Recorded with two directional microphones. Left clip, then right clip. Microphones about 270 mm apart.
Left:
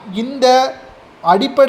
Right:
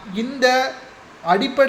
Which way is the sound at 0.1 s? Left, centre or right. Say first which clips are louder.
Left 6 dB; centre.